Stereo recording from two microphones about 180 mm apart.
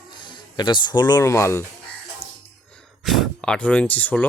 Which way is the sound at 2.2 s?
35° left (ahead or behind).